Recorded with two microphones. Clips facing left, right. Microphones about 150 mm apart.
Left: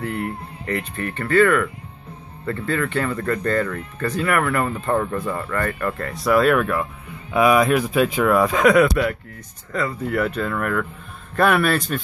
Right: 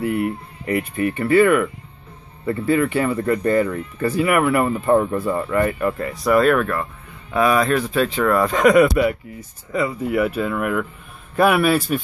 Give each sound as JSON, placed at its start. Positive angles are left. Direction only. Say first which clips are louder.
{"t": 0.0, "sound": "speech", "louder": "right 5 dB", "side_deg": -10}